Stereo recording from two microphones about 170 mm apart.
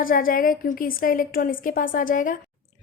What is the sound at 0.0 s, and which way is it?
A woman's voice, 55° left (ahead or behind).